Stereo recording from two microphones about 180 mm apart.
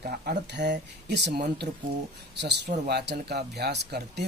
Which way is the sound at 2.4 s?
70° right (ahead or behind).